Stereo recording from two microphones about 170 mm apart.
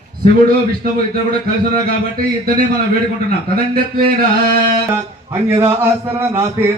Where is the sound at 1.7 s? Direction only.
60° right (ahead or behind).